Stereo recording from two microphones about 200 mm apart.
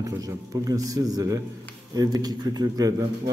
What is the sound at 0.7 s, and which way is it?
A man's voice, 15° right (ahead or behind).